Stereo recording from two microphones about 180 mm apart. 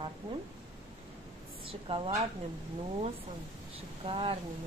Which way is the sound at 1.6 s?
30° right (ahead or behind).